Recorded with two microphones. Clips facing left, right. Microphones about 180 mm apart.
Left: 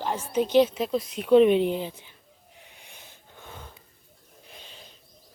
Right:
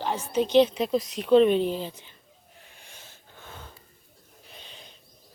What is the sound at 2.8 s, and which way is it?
Gasp, 15° left (ahead or behind).